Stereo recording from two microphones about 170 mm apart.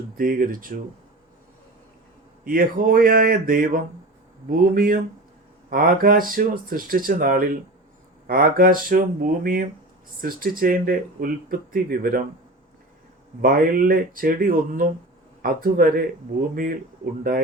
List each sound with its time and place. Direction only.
0.2 s speech: 55° right (ahead or behind)
2.4 s speech: 55° right (ahead or behind)
13.4 s speech: 55° right (ahead or behind)